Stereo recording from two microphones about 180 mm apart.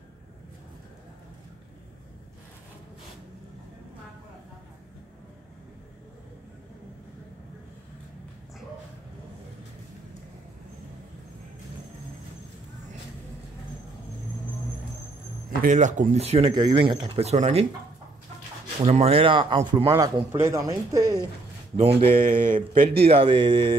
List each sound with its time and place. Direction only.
15.6 s speech: 45° right (ahead or behind)
18.8 s a man's voice: 35° right (ahead or behind); by 21.2 s 20° right (ahead or behind)
21.7 s a man's voice: 30° right (ahead or behind)